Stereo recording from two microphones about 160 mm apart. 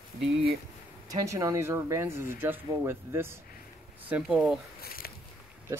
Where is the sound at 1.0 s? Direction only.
20° right (ahead or behind).